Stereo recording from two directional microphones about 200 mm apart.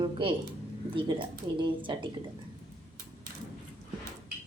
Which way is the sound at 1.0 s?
25° right (ahead or behind).